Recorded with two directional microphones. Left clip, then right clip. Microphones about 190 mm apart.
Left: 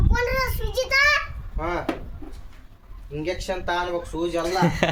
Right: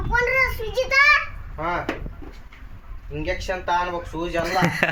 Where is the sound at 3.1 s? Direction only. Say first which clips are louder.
Right 1 dB; 10° left (ahead or behind).